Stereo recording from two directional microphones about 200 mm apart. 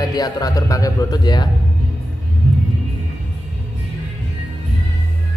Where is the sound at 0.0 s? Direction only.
20° left (ahead or behind).